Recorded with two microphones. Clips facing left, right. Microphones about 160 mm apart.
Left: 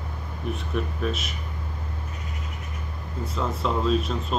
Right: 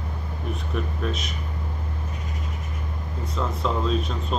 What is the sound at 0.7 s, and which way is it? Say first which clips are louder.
Speech: left 1 dB; centre (ahead or behind).